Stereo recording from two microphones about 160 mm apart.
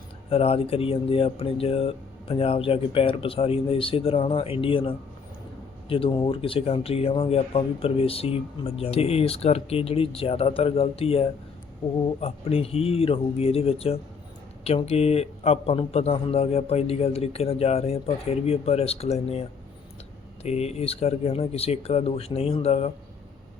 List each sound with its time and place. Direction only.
0.3 s speech: 35° left (ahead or behind)